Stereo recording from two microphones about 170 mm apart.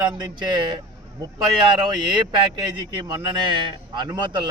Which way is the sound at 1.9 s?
25° right (ahead or behind).